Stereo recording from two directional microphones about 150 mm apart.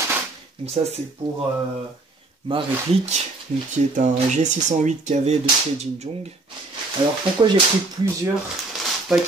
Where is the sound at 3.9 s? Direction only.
55° right (ahead or behind).